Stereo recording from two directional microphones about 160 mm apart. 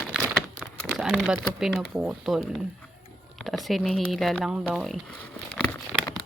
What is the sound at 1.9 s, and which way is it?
Speech, 5° right (ahead or behind).